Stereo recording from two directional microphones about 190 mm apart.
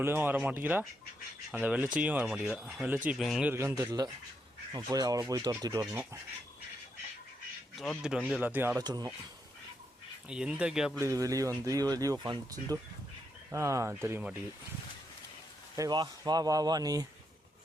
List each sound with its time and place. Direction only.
0.0 s speech: 10° right (ahead or behind)
3.5 s speech: 15° right (ahead or behind)
7.8 s speech: centre (ahead or behind)
8.8 s speech: 20° right (ahead or behind)
10.2 s speech: 5° right (ahead or behind)
10.9 s speech: 15° right (ahead or behind)
15.7 s speech: 20° right (ahead or behind)